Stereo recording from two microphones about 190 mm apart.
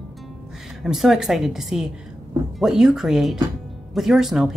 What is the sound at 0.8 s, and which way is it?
Speech, centre (ahead or behind).